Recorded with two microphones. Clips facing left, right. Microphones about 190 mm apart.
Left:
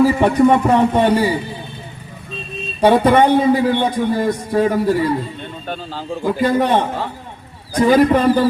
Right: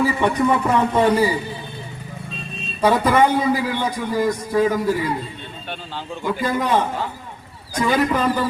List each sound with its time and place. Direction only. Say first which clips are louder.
0.0 s a man's voice: left 6 dB; 35° left (ahead or behind)
2.8 s a man's voice: left 4 dB; 30° left (ahead or behind)